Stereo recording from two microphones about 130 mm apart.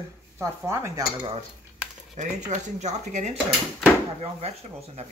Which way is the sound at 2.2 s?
70° right (ahead or behind).